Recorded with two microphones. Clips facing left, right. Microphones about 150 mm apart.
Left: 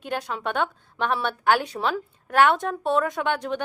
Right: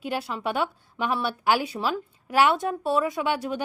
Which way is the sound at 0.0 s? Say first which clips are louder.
Even; 5° right (ahead or behind).